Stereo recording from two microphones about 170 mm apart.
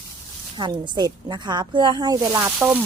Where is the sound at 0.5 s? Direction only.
25° right (ahead or behind).